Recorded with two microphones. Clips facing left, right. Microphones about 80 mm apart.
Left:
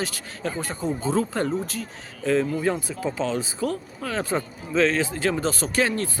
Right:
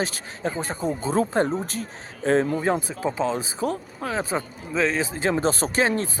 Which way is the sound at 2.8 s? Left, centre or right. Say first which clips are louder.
Right 2 dB; right.